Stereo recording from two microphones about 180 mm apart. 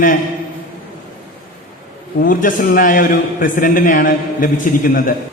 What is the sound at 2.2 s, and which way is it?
A man's voice, 50° left (ahead or behind).